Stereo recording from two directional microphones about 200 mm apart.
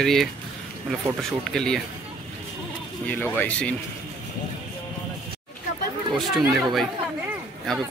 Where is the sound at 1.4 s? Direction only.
5° left (ahead or behind).